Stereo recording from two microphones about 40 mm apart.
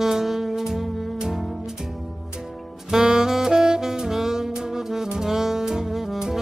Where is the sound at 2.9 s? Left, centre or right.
Centre.